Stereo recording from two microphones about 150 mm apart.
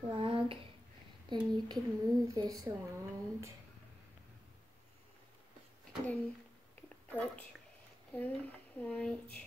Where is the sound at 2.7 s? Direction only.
20° right (ahead or behind).